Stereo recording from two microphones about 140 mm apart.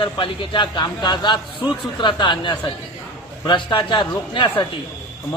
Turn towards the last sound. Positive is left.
turn(degrees=35)  # may be behind; listen again after turning